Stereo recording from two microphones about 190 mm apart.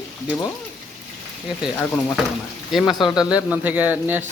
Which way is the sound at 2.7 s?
Centre (ahead or behind).